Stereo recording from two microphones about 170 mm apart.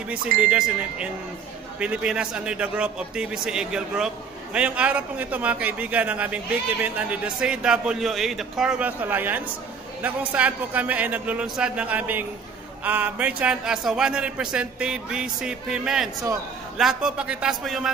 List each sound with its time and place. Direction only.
0.1 s a man's voice: 5° right (ahead or behind)